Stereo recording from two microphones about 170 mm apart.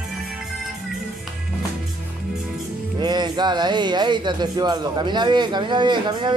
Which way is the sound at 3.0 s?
25° right (ahead or behind).